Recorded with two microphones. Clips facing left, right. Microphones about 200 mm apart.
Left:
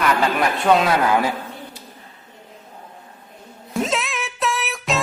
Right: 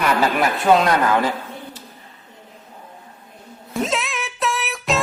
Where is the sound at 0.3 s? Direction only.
Centre (ahead or behind).